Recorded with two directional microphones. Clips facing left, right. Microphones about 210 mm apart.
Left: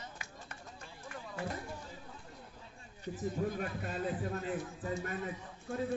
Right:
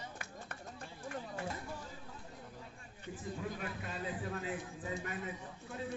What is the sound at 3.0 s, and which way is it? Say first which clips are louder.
Speech: left 6 dB; 40° left (ahead or behind).